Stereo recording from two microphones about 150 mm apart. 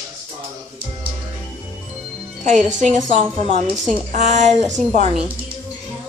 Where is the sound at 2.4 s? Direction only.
55° right (ahead or behind).